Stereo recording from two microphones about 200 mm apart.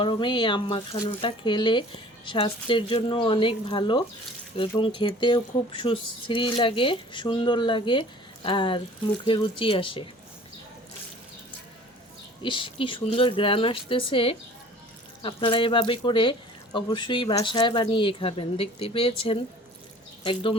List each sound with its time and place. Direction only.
0.0 s speech: 25° left (ahead or behind)
12.4 s speech: 25° left (ahead or behind)